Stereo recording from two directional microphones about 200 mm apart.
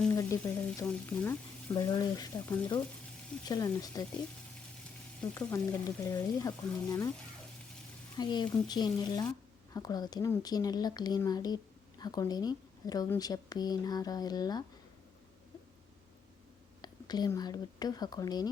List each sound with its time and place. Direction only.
0.1 s speech: 15° left (ahead or behind)
1.7 s speech: 20° left (ahead or behind)
5.2 s speech: 10° left (ahead or behind)
8.1 s speech: 20° left (ahead or behind)
16.8 s a woman's voice: 20° left (ahead or behind)